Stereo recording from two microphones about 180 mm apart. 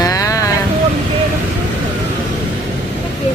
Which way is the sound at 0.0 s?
20° left (ahead or behind).